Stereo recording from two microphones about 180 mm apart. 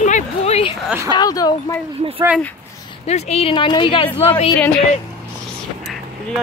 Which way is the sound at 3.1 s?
35° left (ahead or behind).